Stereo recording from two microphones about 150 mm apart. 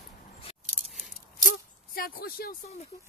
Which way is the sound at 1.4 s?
75° left (ahead or behind).